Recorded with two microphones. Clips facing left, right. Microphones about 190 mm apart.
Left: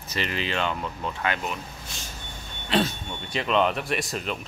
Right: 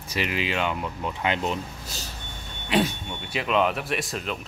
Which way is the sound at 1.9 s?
40° right (ahead or behind).